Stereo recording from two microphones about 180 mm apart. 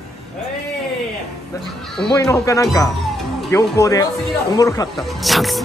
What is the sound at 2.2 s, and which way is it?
Speech, 20° left (ahead or behind).